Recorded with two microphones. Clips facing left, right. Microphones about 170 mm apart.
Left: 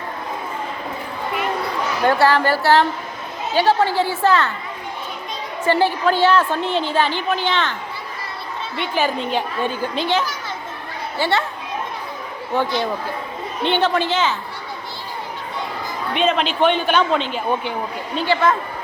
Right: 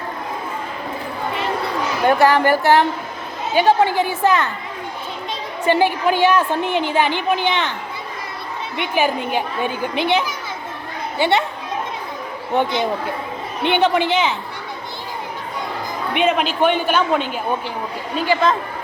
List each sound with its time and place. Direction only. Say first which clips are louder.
2.0 s a woman's voice: right 2 dB; 15° right (ahead or behind)
5.6 s a woman's voice: right 1 dB; 15° right (ahead or behind)
12.5 s a woman's voice: right 2 dB; 20° right (ahead or behind)
16.1 s a woman's voice: right 1 dB; 10° right (ahead or behind)